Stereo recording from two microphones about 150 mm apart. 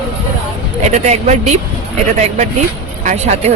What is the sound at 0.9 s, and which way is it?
Speech, 50° right (ahead or behind).